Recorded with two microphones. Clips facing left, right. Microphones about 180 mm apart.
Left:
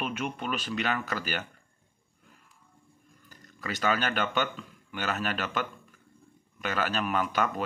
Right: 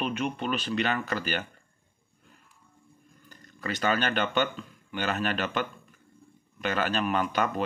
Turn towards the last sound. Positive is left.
turn(degrees=5)  # may be behind; listen again after turning